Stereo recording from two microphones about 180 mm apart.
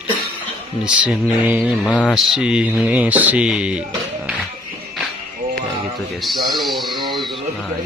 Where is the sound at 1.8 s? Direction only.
5° left (ahead or behind).